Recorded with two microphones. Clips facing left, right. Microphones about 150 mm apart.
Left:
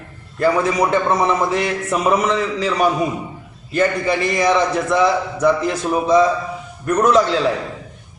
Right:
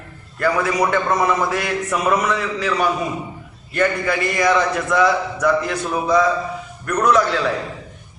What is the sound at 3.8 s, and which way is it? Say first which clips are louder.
A man's voice: left 1 dB; 30° left (ahead or behind).